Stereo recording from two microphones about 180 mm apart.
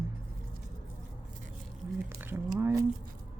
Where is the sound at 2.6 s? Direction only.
15° right (ahead or behind).